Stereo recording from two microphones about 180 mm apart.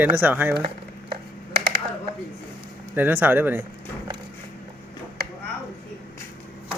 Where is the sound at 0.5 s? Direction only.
30° right (ahead or behind).